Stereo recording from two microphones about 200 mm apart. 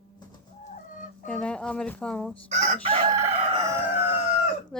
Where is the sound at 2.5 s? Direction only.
35° right (ahead or behind).